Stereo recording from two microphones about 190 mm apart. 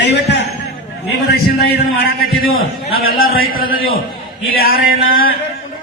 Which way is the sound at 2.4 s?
90° left.